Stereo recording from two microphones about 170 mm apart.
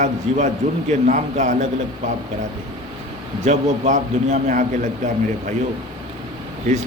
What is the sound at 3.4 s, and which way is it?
A man's voice, 45° right (ahead or behind).